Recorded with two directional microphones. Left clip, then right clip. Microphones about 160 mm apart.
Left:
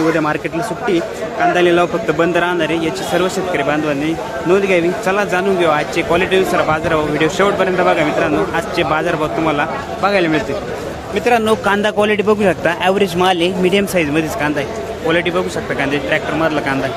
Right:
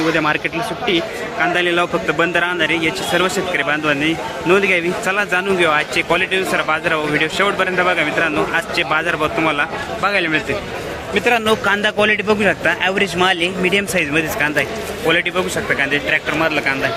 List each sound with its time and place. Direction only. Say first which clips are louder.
0.1 s a man's voice: left 1 dB; 10° left (ahead or behind)
1.4 s a man's voice: left 4 dB; 5° left (ahead or behind)
11.3 s a man's voice: left 2 dB; 20° left (ahead or behind)
15.0 s a man's voice: left 1 dB; centre (ahead or behind); by 16.7 s 15° left (ahead or behind)